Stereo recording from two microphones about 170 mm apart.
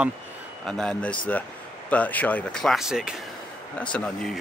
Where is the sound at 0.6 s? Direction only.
5° left (ahead or behind).